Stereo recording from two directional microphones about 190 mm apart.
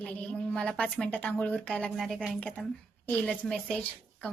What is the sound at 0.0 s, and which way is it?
A woman's voice, 5° left (ahead or behind).